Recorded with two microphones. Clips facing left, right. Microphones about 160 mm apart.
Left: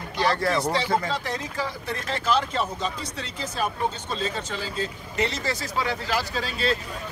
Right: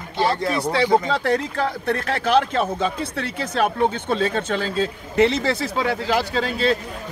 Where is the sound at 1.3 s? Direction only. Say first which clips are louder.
Right 9 dB; 65° right (ahead or behind).